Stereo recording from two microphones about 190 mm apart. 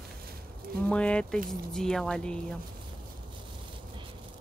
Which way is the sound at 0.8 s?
5° left (ahead or behind).